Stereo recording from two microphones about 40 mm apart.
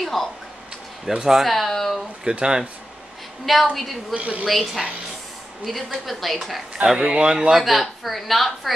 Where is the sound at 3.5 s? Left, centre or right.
Centre.